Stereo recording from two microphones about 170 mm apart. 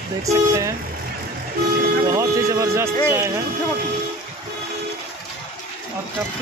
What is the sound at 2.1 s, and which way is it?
Speech, 20° right (ahead or behind).